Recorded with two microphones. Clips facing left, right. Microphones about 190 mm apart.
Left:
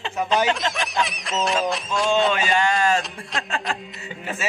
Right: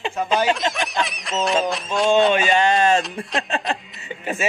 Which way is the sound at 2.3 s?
20° right (ahead or behind).